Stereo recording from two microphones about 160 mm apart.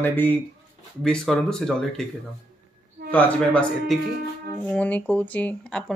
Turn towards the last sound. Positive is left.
turn(degrees=5)  # may be behind; listen again after turning